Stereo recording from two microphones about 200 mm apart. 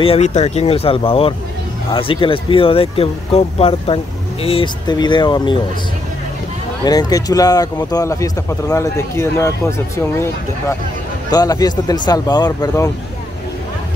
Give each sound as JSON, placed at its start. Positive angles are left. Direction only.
{"t": 0.0, "sound": "speech", "side_deg": 30}
{"t": 6.8, "sound": "speech", "side_deg": 20}